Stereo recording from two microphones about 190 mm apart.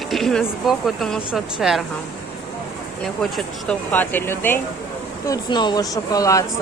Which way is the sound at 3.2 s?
5° left (ahead or behind).